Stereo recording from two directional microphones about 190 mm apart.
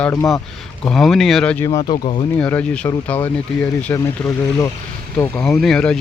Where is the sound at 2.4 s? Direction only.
10° left (ahead or behind).